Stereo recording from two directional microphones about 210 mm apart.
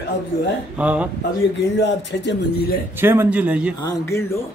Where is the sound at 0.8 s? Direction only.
5° right (ahead or behind).